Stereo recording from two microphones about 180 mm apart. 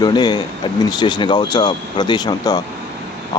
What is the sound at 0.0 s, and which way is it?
Speech, 25° left (ahead or behind).